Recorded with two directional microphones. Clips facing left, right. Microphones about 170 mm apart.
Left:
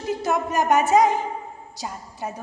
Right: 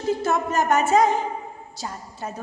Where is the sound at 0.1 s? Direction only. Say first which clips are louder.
Right 1 dB; 15° left (ahead or behind).